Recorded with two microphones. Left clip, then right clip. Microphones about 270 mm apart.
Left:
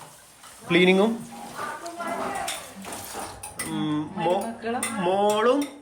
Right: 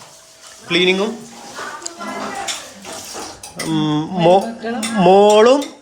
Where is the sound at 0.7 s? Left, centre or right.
Centre.